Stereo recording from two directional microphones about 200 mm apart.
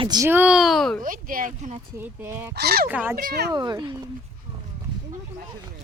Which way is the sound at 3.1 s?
50° right (ahead or behind).